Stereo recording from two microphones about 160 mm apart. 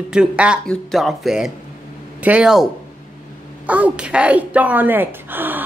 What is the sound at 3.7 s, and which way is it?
Speech, 10° right (ahead or behind).